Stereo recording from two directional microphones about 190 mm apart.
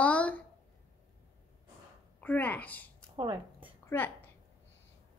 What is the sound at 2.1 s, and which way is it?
Speech, 10° left (ahead or behind).